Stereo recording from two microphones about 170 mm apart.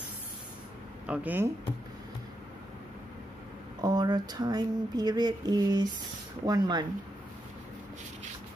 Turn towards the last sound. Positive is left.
turn(degrees=-25)  # may be behind; listen again after turning